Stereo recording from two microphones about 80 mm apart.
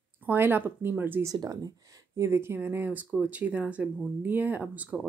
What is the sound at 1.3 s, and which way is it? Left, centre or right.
Speech, right.